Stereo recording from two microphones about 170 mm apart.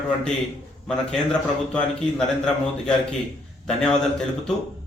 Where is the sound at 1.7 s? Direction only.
5° left (ahead or behind).